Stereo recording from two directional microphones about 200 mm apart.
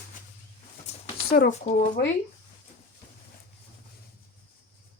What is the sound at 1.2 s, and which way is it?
Speech, 50° left (ahead or behind).